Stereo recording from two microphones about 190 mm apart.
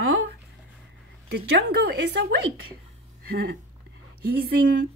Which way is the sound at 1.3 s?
60° right (ahead or behind).